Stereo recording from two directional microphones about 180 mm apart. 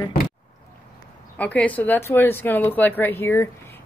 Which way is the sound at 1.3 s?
10° left (ahead or behind).